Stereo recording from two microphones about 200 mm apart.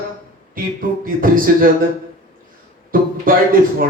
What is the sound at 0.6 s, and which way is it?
A man's voice, 45° right (ahead or behind).